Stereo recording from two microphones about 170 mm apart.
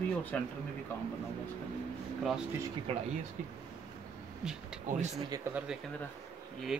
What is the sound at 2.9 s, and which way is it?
Speech, 35° right (ahead or behind).